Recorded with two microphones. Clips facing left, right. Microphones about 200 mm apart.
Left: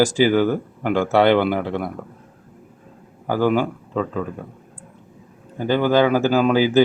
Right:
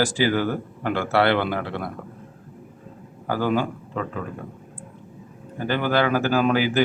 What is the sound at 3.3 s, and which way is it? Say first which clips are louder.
Speech: left 4 dB; 15° left (ahead or behind).